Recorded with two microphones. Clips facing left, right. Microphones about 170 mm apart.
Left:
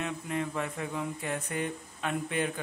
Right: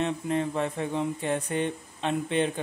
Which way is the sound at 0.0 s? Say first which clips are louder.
Right 6 dB; 30° right (ahead or behind).